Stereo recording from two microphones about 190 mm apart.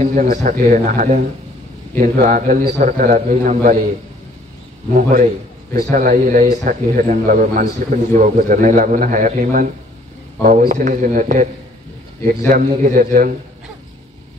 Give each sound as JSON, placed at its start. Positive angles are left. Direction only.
{"t": 0.0, "sound": "a man's voice", "side_deg": -40}
{"t": 4.9, "sound": "a man's voice", "side_deg": -45}
{"t": 12.4, "sound": "a man's voice", "side_deg": -40}